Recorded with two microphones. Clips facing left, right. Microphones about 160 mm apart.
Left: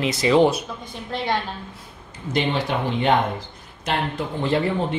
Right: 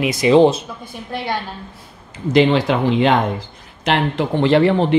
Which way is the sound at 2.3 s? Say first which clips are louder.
Right 8 dB; 90° right.